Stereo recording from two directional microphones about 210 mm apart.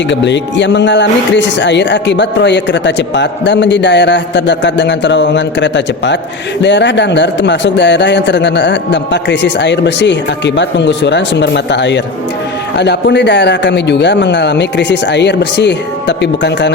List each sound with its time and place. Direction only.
0.1 s speech: 60° left (ahead or behind)